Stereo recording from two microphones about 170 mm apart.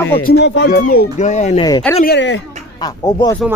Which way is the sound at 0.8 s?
50° left (ahead or behind).